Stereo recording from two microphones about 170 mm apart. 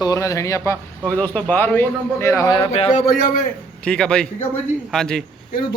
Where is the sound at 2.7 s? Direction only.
35° left (ahead or behind).